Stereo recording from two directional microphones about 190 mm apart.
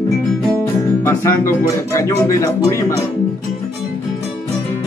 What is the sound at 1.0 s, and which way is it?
Speech, 15° left (ahead or behind).